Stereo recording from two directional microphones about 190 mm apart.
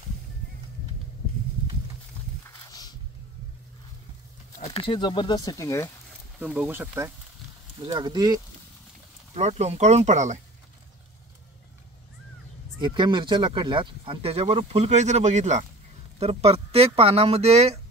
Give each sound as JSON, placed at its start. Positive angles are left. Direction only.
{"t": 2.4, "sound": "a sound", "side_deg": 20}
{"t": 4.6, "sound": "speech", "side_deg": 30}
{"t": 6.4, "sound": "speech", "side_deg": -5}
{"t": 7.8, "sound": "speech", "side_deg": -25}
{"t": 9.3, "sound": "speech", "side_deg": -35}
{"t": 12.8, "sound": "speech", "side_deg": -25}